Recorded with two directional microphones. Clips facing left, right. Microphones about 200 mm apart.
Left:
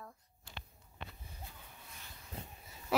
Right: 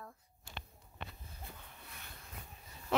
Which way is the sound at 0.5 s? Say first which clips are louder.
Right 2 dB; 55° right (ahead or behind).